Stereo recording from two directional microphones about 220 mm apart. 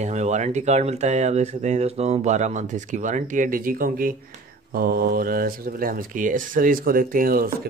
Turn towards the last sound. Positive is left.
turn(degrees=-40)  # may be behind; listen again after turning